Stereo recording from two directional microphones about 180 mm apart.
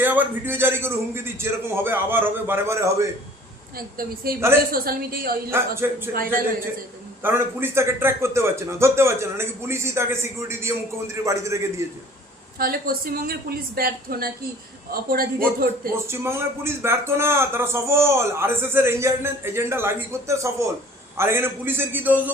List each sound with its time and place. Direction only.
0.0 s speech: 10° right (ahead or behind)
3.8 s a woman's voice: 55° right (ahead or behind)
5.5 s speech: 15° right (ahead or behind)
7.2 s speech: 10° right (ahead or behind)
12.5 s a woman's voice: 55° right (ahead or behind)
16.0 s speech: 15° right (ahead or behind)